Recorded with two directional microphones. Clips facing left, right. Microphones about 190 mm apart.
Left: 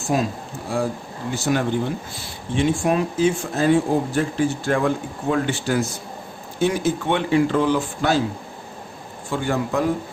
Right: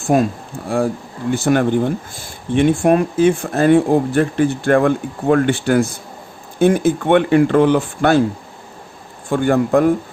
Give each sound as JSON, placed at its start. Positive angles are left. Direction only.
{"t": 0.1, "sound": "speech", "side_deg": -55}
{"t": 9.3, "sound": "speech", "side_deg": -55}